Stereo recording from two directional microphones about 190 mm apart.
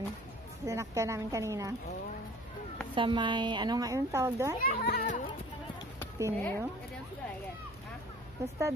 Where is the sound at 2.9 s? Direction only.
25° right (ahead or behind).